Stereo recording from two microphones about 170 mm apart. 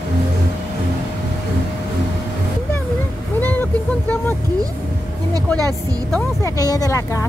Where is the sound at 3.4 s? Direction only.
10° left (ahead or behind).